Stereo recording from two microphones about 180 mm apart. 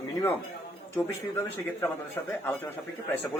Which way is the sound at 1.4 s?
15° left (ahead or behind).